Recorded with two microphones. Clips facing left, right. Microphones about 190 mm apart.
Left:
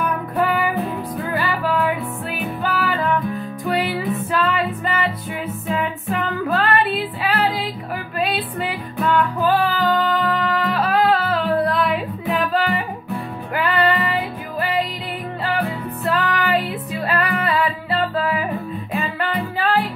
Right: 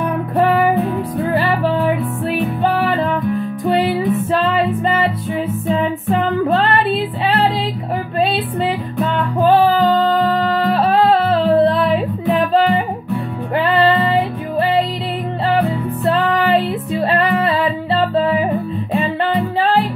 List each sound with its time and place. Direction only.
0.0 s music: 30° right (ahead or behind)
8.2 s music: 30° right (ahead or behind)
16.1 s music: 30° right (ahead or behind)